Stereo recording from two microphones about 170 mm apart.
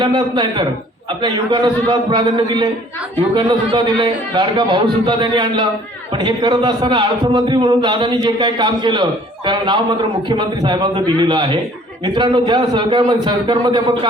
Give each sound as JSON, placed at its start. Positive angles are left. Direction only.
{"t": 0.0, "sound": "a man's voice", "side_deg": -25}